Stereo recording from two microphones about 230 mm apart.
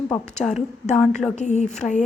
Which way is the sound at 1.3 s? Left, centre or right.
Left.